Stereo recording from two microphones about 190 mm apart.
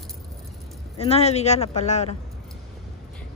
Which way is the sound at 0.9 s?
30° left (ahead or behind).